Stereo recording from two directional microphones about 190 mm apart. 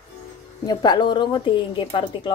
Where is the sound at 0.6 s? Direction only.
20° left (ahead or behind).